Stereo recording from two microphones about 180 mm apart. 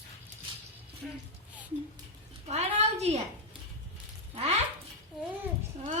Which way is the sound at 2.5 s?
35° right (ahead or behind).